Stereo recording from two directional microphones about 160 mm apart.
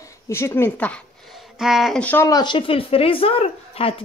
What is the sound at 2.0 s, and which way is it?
Speech, 15° left (ahead or behind).